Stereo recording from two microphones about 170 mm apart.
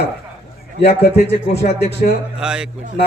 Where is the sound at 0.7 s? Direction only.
75° left (ahead or behind).